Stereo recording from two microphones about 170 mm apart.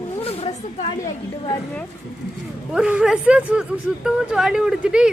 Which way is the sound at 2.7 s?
5° right (ahead or behind).